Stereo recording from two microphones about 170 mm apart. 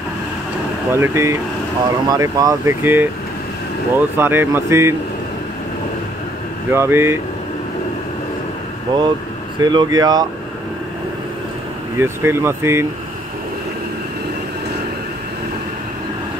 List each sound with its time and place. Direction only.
0.9 s speech: 15° right (ahead or behind)
6.7 s speech: 15° right (ahead or behind)
8.9 s speech: 25° right (ahead or behind)
12.0 s speech: 15° right (ahead or behind)